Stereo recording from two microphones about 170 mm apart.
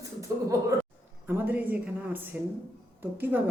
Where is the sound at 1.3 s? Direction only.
10° right (ahead or behind).